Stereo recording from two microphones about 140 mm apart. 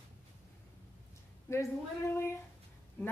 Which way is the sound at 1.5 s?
20° left (ahead or behind).